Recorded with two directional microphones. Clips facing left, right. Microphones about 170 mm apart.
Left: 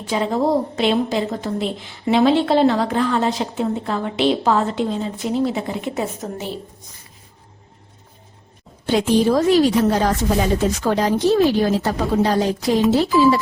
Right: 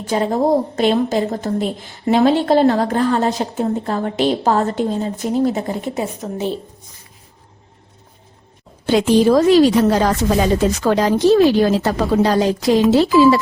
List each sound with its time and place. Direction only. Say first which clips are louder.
0.0 s a woman's voice: right 2 dB; 45° right (ahead or behind)
6.2 s a woman's voice: right 2 dB; centre (ahead or behind)
8.9 s a woman's voice: right 3 dB; 90° right